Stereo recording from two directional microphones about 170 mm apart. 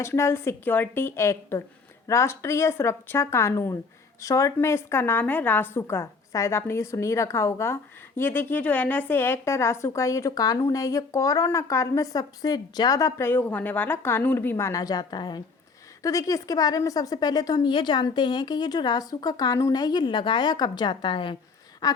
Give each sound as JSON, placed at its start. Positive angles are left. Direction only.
{"t": 0.0, "sound": "a woman's voice", "side_deg": 15}